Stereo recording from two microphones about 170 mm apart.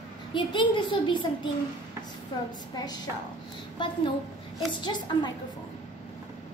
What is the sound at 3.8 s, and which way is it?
A child's voice, 30° left (ahead or behind).